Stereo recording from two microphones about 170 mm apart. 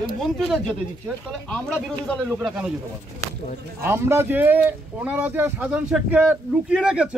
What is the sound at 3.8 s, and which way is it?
Speech, 15° right (ahead or behind).